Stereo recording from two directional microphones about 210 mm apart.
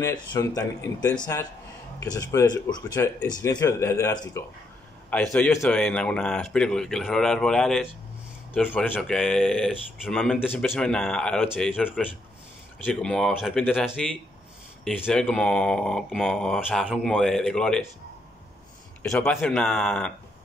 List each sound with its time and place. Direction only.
0.0 s speech: 20° left (ahead or behind)
5.1 s speech: 5° left (ahead or behind)
19.0 s speech: 5° left (ahead or behind)